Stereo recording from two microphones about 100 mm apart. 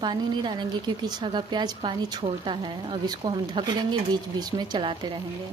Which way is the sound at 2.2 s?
55° right (ahead or behind).